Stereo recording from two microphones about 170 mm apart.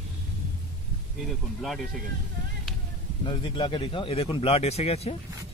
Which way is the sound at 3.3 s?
30° left (ahead or behind).